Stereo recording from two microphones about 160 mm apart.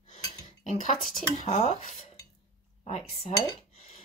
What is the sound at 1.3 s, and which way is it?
Speech, 45° left (ahead or behind).